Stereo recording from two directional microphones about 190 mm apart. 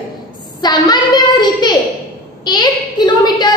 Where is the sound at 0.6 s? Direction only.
20° left (ahead or behind).